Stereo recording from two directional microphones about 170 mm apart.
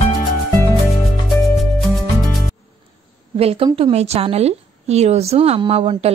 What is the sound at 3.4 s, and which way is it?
A woman's voice, 35° right (ahead or behind).